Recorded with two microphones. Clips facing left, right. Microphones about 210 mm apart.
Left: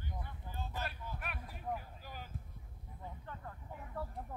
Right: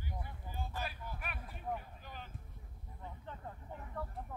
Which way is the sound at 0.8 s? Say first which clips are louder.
Even; centre (ahead or behind).